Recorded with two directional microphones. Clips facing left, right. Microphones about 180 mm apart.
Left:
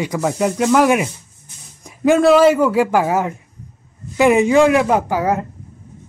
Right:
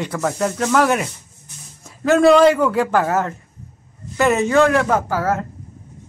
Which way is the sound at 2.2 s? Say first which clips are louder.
Right 1 dB; 5° left (ahead or behind).